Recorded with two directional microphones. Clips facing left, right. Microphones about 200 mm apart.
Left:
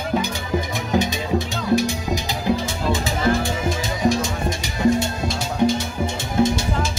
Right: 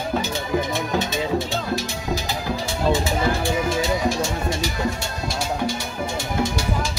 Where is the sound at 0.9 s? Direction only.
15° left (ahead or behind).